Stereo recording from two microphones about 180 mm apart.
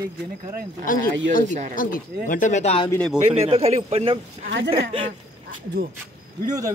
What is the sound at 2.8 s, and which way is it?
Speech, 5° left (ahead or behind).